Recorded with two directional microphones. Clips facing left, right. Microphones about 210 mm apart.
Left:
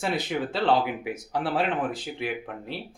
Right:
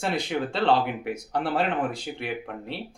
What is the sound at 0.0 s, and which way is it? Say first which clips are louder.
Speech: right 1 dB; centre (ahead or behind).